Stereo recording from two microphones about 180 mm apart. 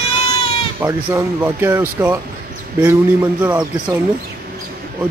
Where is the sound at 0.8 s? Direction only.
15° right (ahead or behind).